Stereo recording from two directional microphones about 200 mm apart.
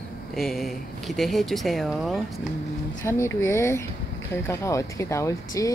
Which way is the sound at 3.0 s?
15° left (ahead or behind).